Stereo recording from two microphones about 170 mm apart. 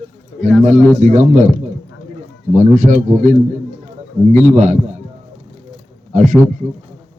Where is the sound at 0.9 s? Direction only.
45° right (ahead or behind).